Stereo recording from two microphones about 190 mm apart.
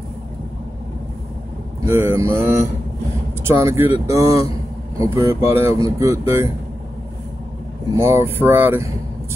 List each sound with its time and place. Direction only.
1.9 s speech: 15° right (ahead or behind)
8.0 s speech: 10° right (ahead or behind)